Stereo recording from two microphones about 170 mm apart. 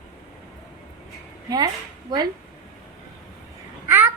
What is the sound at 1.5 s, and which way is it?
Speech, 25° right (ahead or behind).